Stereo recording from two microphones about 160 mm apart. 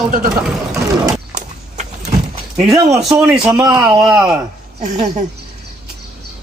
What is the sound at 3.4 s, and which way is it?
Speech, 5° right (ahead or behind).